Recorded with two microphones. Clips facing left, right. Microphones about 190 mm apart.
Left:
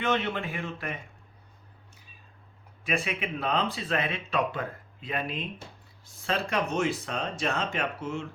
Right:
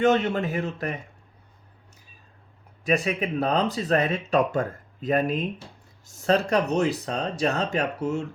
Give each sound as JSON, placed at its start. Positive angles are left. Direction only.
{"t": 0.0, "sound": "speech", "side_deg": -45}
{"t": 2.8, "sound": "speech", "side_deg": -40}